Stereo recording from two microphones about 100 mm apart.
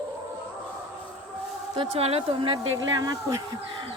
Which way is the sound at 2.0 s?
90° right.